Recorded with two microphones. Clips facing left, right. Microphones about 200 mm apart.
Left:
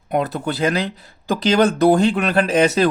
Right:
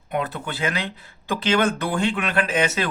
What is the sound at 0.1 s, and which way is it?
Speech, 40° left (ahead or behind).